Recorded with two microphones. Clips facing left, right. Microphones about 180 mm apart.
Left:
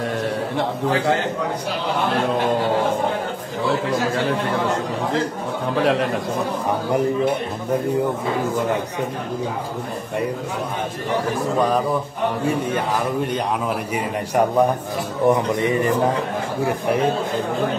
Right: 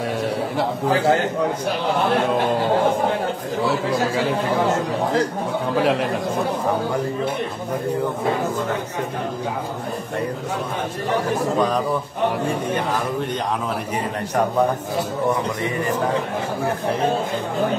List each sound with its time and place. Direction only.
5.8 s a man's voice: centre (ahead or behind)
15.2 s a man's voice: 20° left (ahead or behind)